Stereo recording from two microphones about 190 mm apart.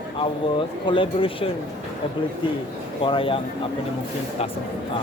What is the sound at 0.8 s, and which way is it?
Speech, 25° left (ahead or behind).